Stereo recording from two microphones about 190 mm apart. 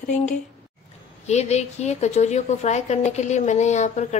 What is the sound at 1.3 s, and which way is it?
A woman's voice, 35° left (ahead or behind).